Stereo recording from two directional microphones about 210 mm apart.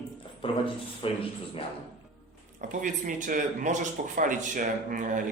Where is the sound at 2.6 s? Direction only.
35° right (ahead or behind).